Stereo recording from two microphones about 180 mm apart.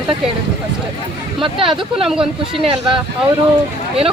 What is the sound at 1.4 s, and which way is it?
Speech, 30° right (ahead or behind).